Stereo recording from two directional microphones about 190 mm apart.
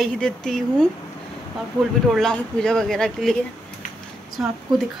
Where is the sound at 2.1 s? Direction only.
5° left (ahead or behind).